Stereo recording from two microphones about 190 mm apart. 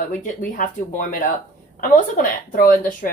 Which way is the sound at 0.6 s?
45° left (ahead or behind).